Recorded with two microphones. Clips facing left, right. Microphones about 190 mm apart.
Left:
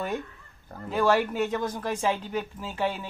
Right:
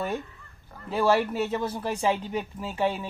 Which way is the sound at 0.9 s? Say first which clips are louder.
Even; 10° right (ahead or behind).